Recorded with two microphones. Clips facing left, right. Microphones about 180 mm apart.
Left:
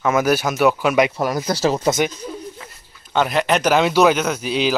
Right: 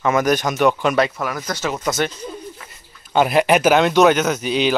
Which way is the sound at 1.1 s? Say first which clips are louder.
Left 4 dB; 35° left (ahead or behind).